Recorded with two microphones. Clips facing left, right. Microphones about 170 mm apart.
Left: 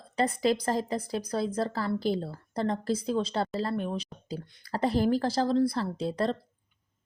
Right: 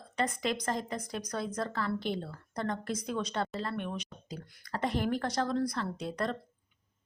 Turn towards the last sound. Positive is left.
turn(degrees=30)  # may be behind; listen again after turning